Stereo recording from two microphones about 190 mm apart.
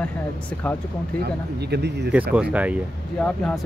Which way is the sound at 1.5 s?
60° right (ahead or behind).